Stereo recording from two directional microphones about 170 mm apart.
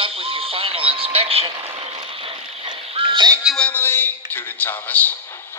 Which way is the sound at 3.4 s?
5° left (ahead or behind).